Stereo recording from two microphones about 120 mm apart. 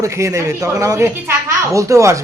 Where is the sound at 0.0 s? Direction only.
25° right (ahead or behind).